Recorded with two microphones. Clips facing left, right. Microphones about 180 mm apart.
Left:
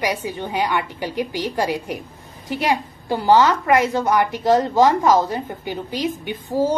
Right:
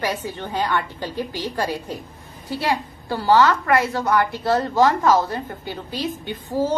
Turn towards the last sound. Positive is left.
turn(degrees=15)  # may be behind; listen again after turning